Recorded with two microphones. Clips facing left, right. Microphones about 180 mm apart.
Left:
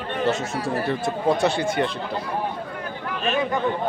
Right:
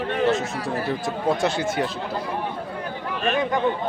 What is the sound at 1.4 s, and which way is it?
Speech, 60° left (ahead or behind).